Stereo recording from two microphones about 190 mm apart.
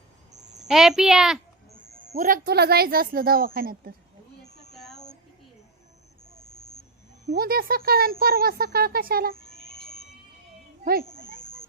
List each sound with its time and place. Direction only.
0.7 s speech: centre (ahead or behind)
2.1 s speech: 50° right (ahead or behind)
4.7 s a sound: centre (ahead or behind)
6.5 s vehicle: 20° left (ahead or behind)
7.3 s speech: 50° right (ahead or behind)